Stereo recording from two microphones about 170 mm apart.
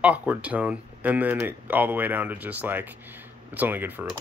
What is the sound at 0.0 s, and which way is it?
Speech, 10° right (ahead or behind).